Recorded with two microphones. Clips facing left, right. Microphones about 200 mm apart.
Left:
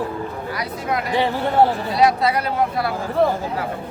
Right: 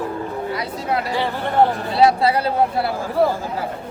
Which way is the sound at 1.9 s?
30° right (ahead or behind).